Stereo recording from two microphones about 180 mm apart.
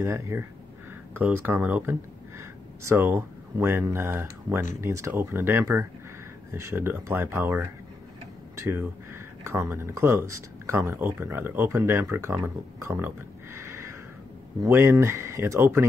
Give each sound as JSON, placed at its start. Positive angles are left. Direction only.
{"t": 0.0, "sound": "speech", "side_deg": -15}